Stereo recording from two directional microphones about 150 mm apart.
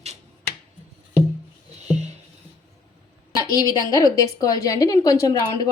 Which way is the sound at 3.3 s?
25° left (ahead or behind).